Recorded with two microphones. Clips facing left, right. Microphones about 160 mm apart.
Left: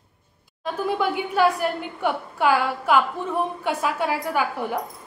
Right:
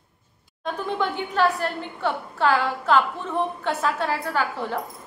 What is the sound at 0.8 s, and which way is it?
A woman's voice, 10° left (ahead or behind).